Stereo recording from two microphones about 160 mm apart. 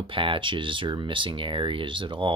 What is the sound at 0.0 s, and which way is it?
Speech, 35° right (ahead or behind).